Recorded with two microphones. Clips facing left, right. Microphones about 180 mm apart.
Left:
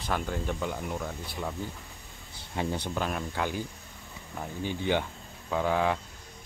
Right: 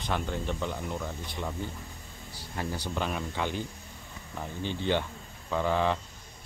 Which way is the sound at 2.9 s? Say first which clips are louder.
Left 1 dB; centre (ahead or behind).